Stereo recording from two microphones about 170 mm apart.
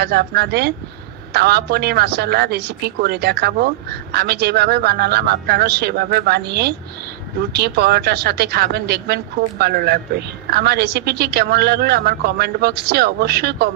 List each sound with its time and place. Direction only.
0.0 s speech: 65° right (ahead or behind)